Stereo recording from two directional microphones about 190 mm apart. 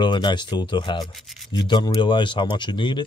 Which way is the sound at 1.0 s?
Centre (ahead or behind).